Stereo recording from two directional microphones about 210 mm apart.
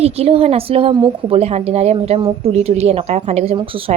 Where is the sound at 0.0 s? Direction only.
30° right (ahead or behind).